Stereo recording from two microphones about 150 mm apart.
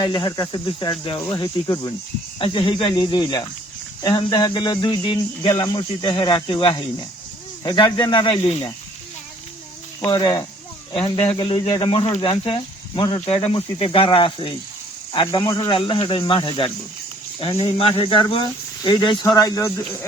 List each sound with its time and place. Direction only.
0.0 s speech: 30° left (ahead or behind)
10.0 s speech: 30° left (ahead or behind)